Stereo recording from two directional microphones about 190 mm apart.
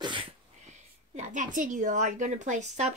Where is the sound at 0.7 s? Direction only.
40° right (ahead or behind).